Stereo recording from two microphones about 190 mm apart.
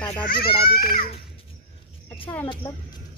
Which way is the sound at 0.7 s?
50° left (ahead or behind).